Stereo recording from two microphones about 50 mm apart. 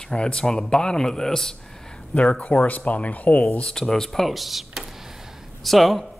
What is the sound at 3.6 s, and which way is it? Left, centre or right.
Speech, centre.